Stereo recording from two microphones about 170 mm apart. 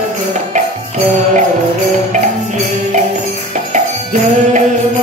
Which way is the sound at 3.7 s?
45° right (ahead or behind).